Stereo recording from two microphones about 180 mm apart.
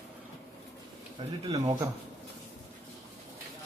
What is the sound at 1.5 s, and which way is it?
Speech, 20° right (ahead or behind).